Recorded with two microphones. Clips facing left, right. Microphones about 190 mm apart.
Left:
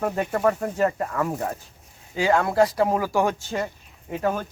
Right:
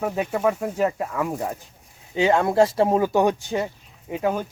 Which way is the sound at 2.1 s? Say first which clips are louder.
Right 2 dB; 25° right (ahead or behind).